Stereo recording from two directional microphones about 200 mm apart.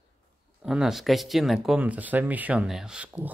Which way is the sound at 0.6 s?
5° right (ahead or behind).